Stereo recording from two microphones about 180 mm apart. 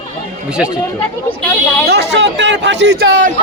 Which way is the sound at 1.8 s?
70° right (ahead or behind).